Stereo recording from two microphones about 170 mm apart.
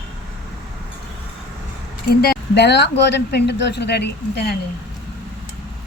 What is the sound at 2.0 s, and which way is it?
Speech, 65° left (ahead or behind).